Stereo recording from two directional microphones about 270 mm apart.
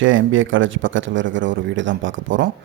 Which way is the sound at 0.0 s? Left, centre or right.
Right.